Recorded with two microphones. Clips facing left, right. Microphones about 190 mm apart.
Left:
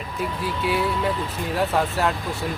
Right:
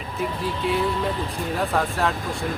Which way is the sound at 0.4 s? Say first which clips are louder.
Even; 5° left (ahead or behind).